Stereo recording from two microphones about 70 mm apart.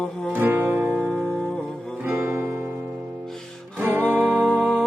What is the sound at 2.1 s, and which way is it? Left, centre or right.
Music, right.